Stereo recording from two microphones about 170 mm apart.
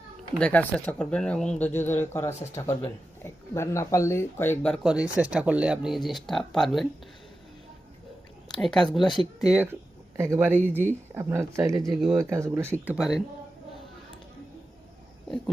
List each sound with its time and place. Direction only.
0.3 s speech: 10° left (ahead or behind)
8.6 s speech: 5° left (ahead or behind)
9.0 s speech: 25° left (ahead or behind)
10.2 s speech: 15° right (ahead or behind)
12.8 s speech: 5° right (ahead or behind)